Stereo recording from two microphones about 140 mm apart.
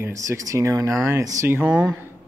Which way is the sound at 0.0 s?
20° right (ahead or behind).